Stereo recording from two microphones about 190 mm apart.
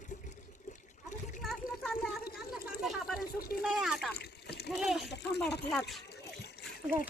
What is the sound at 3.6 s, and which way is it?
Speech, centre (ahead or behind).